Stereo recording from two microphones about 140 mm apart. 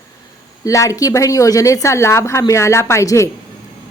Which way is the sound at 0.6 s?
25° left (ahead or behind).